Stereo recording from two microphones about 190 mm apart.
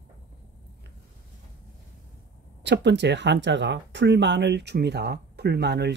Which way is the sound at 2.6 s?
65° right (ahead or behind).